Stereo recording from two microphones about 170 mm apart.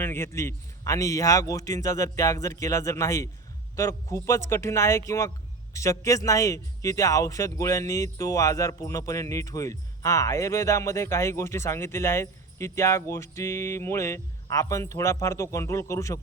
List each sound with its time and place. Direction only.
0.0 s a man's voice: 15° left (ahead or behind)